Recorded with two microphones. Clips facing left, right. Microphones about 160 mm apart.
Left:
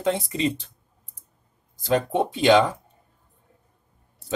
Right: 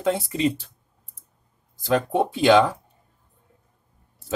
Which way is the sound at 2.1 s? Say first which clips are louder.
Right 1 dB; 5° right (ahead or behind).